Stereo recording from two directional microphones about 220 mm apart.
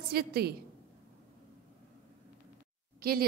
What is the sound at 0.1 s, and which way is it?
Speech, 45° right (ahead or behind).